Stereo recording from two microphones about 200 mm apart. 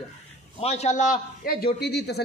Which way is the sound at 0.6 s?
30° left (ahead or behind).